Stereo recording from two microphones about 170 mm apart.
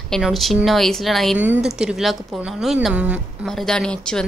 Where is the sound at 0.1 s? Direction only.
Centre (ahead or behind).